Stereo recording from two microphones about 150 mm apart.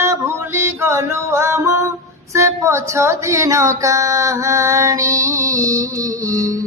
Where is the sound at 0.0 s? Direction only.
20° right (ahead or behind).